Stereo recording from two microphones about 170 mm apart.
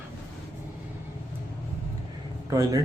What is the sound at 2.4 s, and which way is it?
Speech, 20° right (ahead or behind).